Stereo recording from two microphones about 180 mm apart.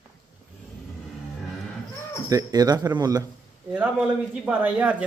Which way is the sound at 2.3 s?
20° right (ahead or behind).